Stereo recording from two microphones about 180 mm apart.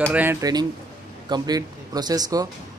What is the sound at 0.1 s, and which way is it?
Speech, 10° right (ahead or behind).